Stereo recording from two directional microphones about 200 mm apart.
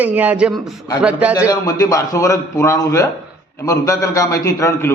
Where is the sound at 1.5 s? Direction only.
20° left (ahead or behind).